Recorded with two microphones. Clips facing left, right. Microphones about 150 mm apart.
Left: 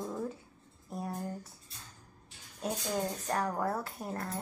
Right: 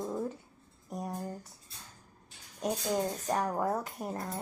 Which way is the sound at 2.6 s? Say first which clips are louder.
Right 3 dB; 10° right (ahead or behind).